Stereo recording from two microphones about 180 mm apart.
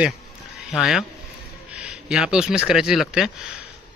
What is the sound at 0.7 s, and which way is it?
Speech, centre (ahead or behind).